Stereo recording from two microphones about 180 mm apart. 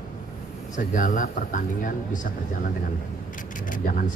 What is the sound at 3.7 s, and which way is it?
Speech, 45° left (ahead or behind).